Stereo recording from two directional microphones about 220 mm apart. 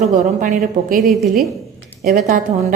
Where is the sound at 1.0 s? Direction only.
Centre (ahead or behind).